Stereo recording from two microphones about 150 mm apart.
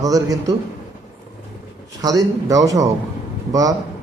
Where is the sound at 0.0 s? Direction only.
25° right (ahead or behind).